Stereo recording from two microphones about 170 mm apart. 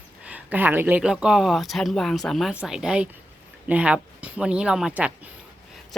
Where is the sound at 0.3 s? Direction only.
10° right (ahead or behind).